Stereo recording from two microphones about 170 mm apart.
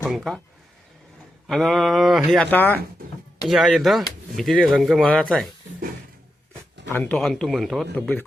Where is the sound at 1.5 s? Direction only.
Centre (ahead or behind).